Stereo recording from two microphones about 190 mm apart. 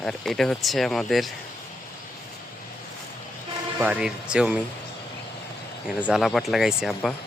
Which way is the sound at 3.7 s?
5° right (ahead or behind).